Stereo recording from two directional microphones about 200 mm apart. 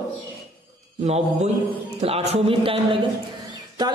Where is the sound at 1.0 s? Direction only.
35° right (ahead or behind).